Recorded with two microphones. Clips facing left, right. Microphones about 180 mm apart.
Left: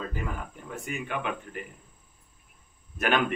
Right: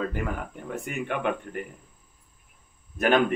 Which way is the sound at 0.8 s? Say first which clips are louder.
Right 4 dB; 55° right (ahead or behind).